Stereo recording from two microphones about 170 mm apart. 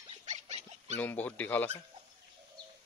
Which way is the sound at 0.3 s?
40° right (ahead or behind).